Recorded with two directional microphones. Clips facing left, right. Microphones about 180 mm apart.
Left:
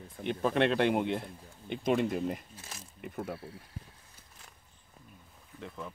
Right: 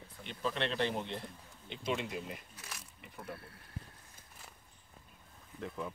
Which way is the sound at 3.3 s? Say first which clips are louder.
Left 8 dB; 60° right (ahead or behind).